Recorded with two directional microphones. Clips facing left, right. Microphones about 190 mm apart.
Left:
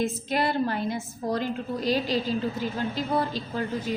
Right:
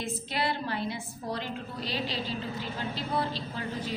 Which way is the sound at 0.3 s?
45° left (ahead or behind).